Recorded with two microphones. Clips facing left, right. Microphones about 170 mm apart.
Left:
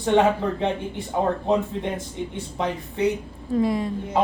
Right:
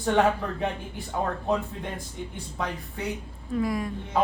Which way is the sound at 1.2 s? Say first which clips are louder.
Left 5 dB; 20° left (ahead or behind).